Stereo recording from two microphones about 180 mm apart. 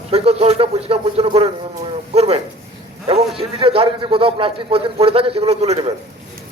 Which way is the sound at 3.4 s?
30° right (ahead or behind).